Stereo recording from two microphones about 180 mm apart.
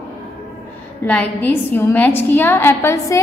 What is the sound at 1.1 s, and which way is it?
A woman's voice, 10° left (ahead or behind).